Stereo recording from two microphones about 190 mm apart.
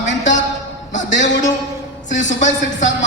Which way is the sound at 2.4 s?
40° left (ahead or behind).